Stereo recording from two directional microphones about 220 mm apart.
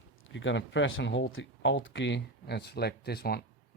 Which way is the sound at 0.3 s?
55° left (ahead or behind).